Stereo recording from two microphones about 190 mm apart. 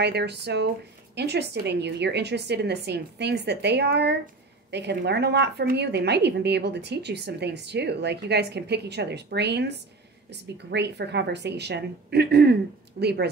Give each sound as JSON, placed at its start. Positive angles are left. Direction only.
{"t": 0.0, "sound": "a woman's voice", "side_deg": -60}